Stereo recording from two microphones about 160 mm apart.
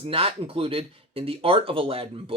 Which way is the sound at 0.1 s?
35° right (ahead or behind).